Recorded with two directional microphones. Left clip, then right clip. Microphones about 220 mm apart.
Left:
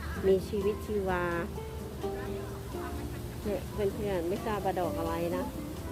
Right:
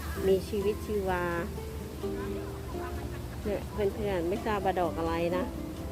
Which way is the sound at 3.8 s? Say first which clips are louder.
Right 2 dB; 10° right (ahead or behind).